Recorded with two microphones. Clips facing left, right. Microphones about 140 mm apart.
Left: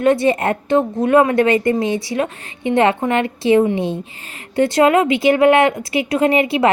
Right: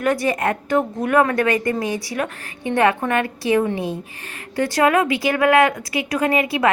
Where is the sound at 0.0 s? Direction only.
25° left (ahead or behind).